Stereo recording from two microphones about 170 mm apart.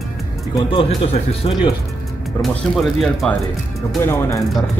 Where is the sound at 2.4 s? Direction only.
Centre (ahead or behind).